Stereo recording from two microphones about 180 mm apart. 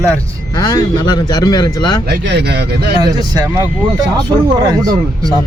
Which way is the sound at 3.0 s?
20° right (ahead or behind).